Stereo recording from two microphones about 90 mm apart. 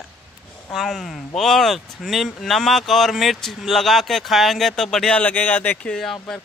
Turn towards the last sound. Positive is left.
turn(degrees=5)  # may be behind; listen again after turning